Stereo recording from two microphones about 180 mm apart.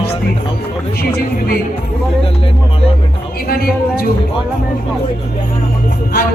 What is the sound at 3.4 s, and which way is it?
Speech, 55° left (ahead or behind).